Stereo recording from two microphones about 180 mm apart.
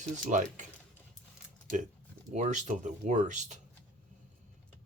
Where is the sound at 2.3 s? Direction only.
40° right (ahead or behind).